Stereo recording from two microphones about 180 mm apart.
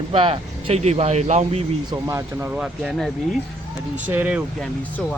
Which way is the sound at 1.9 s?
15° right (ahead or behind).